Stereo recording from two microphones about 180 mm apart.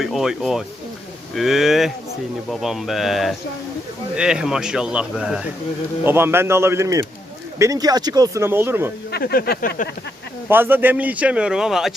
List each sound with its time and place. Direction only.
0.0 s speech: centre (ahead or behind)
9.1 s a sound: 60° left (ahead or behind)
10.5 s speech: 10° right (ahead or behind)